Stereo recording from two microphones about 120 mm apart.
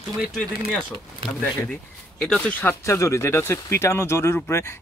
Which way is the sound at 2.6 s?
20° left (ahead or behind).